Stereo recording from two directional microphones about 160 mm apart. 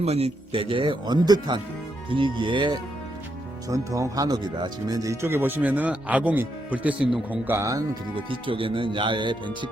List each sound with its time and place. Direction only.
0.0 s speech: 40° right (ahead or behind)
3.7 s speech: 20° right (ahead or behind)
8.1 s speech: 35° right (ahead or behind)